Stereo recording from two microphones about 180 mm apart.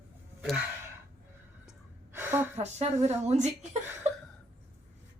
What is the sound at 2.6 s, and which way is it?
Speech, 35° right (ahead or behind).